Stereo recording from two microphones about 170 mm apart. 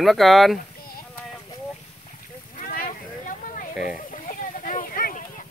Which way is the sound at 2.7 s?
55° left (ahead or behind).